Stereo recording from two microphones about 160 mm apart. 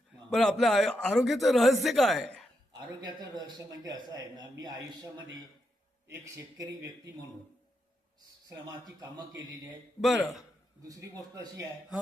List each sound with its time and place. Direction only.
0.3 s speech: 5° left (ahead or behind)
2.7 s speech: 25° right (ahead or behind)
6.1 s speech: 20° right (ahead or behind)
8.4 s speech: 20° right (ahead or behind)
10.0 s speech: centre (ahead or behind)
10.8 s speech: 25° right (ahead or behind)